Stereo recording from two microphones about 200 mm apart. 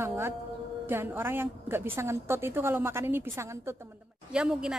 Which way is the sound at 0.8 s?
10° right (ahead or behind).